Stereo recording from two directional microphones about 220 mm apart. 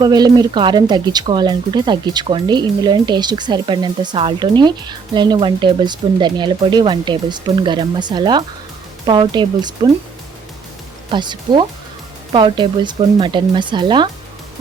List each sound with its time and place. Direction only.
0.0 s speech: 20° right (ahead or behind)
11.1 s speech: 20° right (ahead or behind)